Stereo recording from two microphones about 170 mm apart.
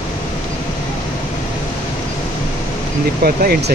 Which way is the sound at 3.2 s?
60° right (ahead or behind).